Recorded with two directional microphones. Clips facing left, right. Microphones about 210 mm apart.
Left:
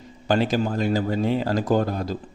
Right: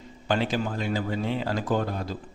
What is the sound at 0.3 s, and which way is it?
Speech, 40° left (ahead or behind).